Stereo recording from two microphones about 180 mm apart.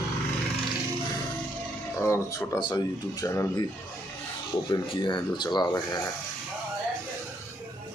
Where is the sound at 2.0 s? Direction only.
15° left (ahead or behind).